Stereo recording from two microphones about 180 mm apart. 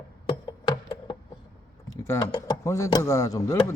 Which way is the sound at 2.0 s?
20° left (ahead or behind).